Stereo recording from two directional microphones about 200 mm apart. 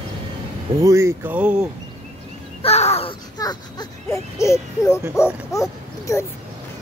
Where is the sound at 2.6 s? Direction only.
30° left (ahead or behind).